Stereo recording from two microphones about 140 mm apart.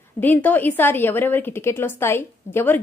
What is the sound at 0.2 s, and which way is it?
Speech, 10° left (ahead or behind).